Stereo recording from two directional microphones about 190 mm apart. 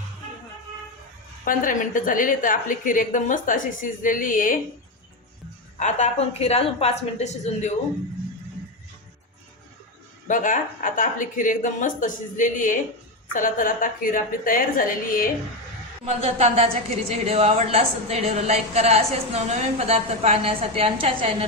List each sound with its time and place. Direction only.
1.5 s a woman's voice: 45° left (ahead or behind)
5.7 s a woman's voice: 40° left (ahead or behind)
10.2 s a woman's voice: 45° left (ahead or behind)
16.0 s a woman's voice: 35° right (ahead or behind)